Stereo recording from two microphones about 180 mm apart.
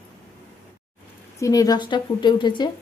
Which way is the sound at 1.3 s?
20° left (ahead or behind).